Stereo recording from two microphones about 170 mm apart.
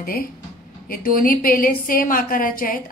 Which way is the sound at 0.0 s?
60° left (ahead or behind).